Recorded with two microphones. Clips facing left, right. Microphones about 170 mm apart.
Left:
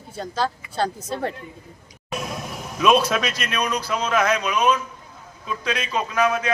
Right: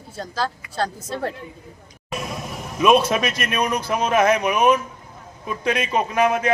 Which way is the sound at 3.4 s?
20° right (ahead or behind).